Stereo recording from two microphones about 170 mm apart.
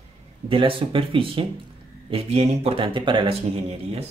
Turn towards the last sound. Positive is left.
turn(degrees=-35)  # may be behind; listen again after turning